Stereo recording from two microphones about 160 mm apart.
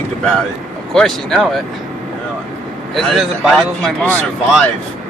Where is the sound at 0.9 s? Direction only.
5° left (ahead or behind).